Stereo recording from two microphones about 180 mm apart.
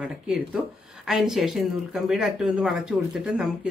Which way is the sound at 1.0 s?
Centre (ahead or behind).